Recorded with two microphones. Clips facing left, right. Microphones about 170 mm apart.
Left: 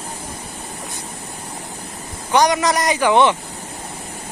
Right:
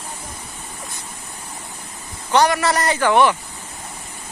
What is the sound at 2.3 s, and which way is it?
A man's voice, 15° left (ahead or behind).